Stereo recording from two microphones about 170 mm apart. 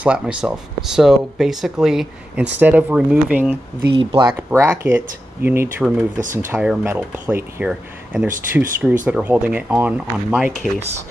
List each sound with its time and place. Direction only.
0.0 s speech: 5° right (ahead or behind)
3.9 s speech: 30° right (ahead or behind)
4.4 s speech: 10° right (ahead or behind)